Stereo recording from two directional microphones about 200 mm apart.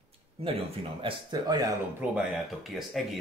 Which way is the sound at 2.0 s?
5° right (ahead or behind).